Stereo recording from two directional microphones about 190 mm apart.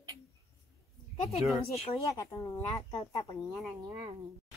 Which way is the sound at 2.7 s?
30° left (ahead or behind).